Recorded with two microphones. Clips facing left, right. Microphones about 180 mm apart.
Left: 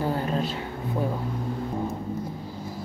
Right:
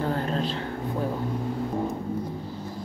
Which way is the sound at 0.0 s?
10° left (ahead or behind).